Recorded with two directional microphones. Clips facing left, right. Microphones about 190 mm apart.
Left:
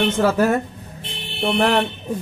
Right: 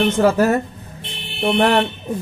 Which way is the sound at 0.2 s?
10° right (ahead or behind).